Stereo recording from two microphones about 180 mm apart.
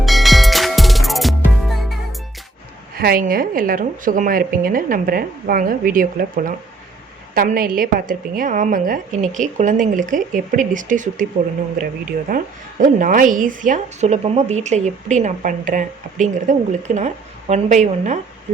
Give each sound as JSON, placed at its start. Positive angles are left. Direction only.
{"t": 0.0, "sound": "music", "side_deg": 0}
{"t": 3.0, "sound": "speech", "side_deg": -55}
{"t": 12.3, "sound": "a woman's voice", "side_deg": -50}